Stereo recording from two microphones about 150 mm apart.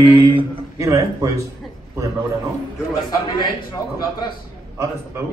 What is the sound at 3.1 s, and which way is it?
A man's voice, 30° left (ahead or behind).